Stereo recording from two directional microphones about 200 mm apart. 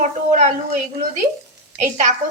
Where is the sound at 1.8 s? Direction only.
40° right (ahead or behind).